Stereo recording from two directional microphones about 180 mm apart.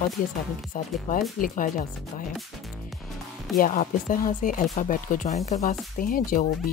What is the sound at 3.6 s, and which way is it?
Speech, 45° left (ahead or behind).